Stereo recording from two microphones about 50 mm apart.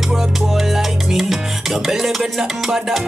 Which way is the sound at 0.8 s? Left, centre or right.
Centre.